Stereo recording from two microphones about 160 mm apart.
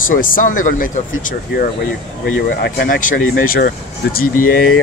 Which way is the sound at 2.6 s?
65° left (ahead or behind).